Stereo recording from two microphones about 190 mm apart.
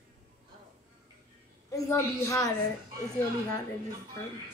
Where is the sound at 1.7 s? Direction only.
15° left (ahead or behind).